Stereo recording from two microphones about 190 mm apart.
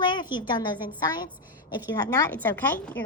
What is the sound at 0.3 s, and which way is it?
A woman's voice, 25° left (ahead or behind).